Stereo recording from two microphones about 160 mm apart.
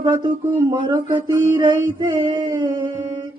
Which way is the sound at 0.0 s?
30° right (ahead or behind).